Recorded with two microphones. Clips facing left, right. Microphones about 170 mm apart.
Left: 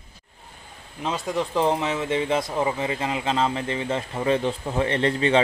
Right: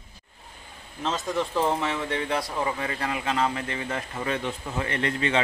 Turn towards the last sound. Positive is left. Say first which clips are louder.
# left 5 dB
turn(degrees=30)  # may be behind; listen again after turning